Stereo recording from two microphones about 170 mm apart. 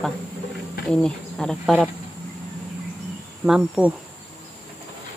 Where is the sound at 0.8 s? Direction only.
5° left (ahead or behind).